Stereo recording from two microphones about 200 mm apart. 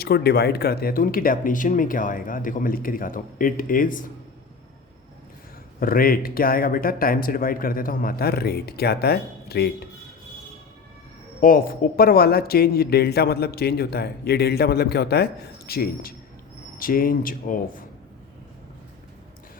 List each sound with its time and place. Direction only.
0.0 s speech: 50° left (ahead or behind)
5.8 s speech: 45° left (ahead or behind)
11.3 s speech: 45° left (ahead or behind)